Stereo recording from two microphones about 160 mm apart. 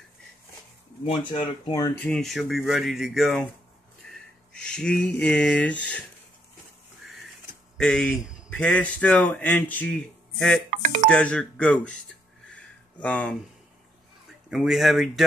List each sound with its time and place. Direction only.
1.0 s speech: 30° left (ahead or behind)
1.9 s speech: 10° left (ahead or behind)
4.0 s a sound: centre (ahead or behind)
4.5 s speech: 5° left (ahead or behind)
7.7 s speech: centre (ahead or behind)
10.7 s speech: 50° right (ahead or behind)
11.1 s speech: 5° left (ahead or behind)
13.0 s speech: 10° left (ahead or behind)
14.5 s speech: centre (ahead or behind)